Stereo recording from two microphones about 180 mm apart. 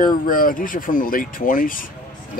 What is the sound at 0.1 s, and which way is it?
Speech, 50° left (ahead or behind).